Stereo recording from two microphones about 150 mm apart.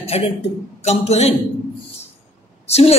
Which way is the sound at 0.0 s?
40° left (ahead or behind).